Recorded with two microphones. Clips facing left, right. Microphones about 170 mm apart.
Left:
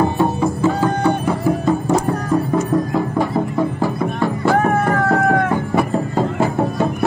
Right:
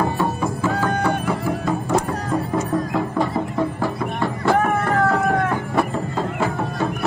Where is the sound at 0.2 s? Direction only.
25° left (ahead or behind).